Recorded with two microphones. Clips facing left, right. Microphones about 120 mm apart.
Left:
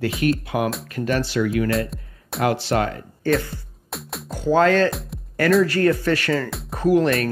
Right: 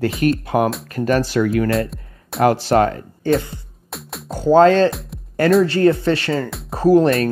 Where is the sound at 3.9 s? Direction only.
Centre (ahead or behind).